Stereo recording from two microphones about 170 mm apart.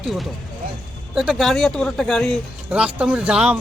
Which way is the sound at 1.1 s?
Centre (ahead or behind).